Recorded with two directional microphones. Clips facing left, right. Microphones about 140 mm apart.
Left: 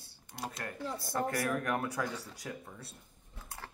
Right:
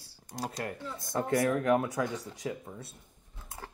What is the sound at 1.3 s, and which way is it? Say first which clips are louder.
Speech: right 7 dB; 25° right (ahead or behind).